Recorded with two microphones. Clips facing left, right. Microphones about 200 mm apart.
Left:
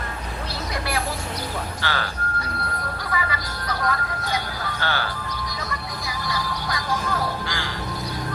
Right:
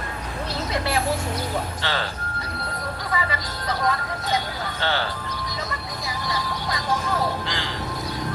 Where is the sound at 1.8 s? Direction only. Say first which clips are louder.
Even; 25° right (ahead or behind).